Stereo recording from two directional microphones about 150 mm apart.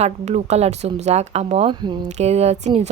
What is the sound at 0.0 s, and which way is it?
Speech, 45° right (ahead or behind).